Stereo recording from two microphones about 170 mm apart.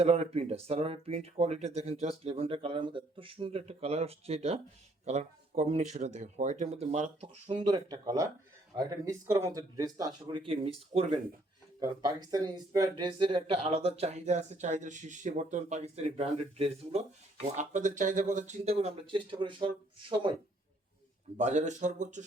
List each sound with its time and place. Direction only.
0.0 s speech: 40° right (ahead or behind)
7.6 s speech: 25° right (ahead or behind)
17.6 s speech: 45° right (ahead or behind); by 20.3 s 30° right (ahead or behind)
21.3 s speech: 45° right (ahead or behind)